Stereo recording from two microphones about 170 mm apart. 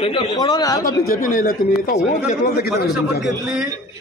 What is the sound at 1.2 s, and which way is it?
Speech, 55° left (ahead or behind).